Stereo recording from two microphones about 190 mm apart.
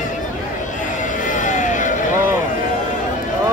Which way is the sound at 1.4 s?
40° left (ahead or behind).